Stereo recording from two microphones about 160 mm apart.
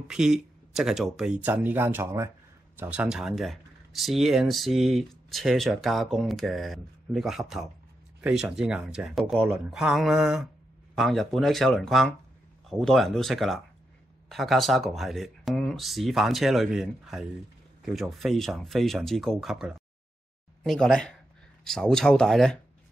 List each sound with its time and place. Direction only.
0.1 s speech: 5° right (ahead or behind)